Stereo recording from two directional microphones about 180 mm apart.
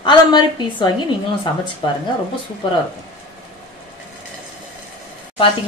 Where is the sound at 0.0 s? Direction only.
25° left (ahead or behind).